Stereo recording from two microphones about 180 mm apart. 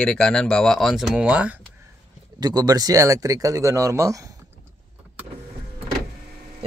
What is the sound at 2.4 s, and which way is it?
Speech, 20° right (ahead or behind).